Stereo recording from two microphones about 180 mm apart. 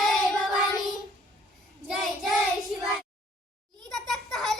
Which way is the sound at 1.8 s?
Centre (ahead or behind).